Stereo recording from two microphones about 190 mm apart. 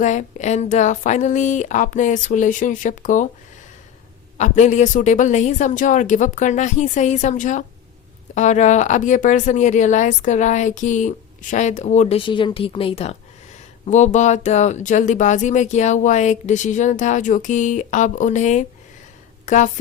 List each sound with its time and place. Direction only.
0.0 s speech: 40° left (ahead or behind)
4.4 s speech: 40° left (ahead or behind)